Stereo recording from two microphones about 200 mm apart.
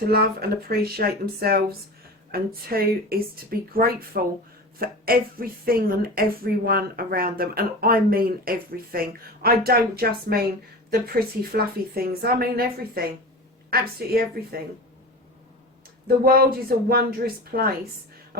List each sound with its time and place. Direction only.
0.1 s speech: 50° right (ahead or behind)
16.0 s speech: 50° right (ahead or behind)